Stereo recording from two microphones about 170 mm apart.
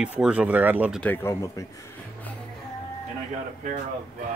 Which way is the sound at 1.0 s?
15° left (ahead or behind).